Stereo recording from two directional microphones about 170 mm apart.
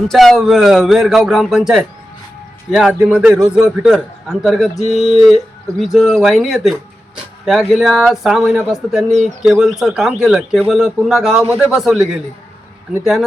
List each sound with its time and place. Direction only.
0.1 s speech: centre (ahead or behind)